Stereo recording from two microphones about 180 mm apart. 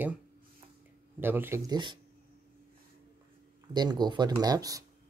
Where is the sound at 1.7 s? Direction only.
25° right (ahead or behind).